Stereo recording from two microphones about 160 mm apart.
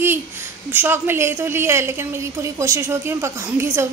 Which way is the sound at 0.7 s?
10° right (ahead or behind).